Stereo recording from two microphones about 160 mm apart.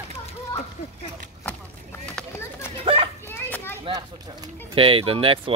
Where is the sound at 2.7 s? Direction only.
35° right (ahead or behind).